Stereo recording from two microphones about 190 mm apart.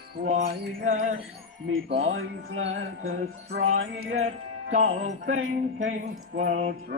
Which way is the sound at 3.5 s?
55° right (ahead or behind).